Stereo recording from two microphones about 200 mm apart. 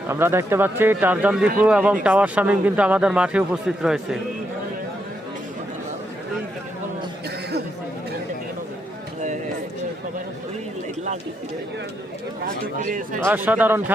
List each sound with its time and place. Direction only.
0.1 s speech: 10° right (ahead or behind)
12.7 s speech: 40° right (ahead or behind)
13.2 s speech: 10° right (ahead or behind)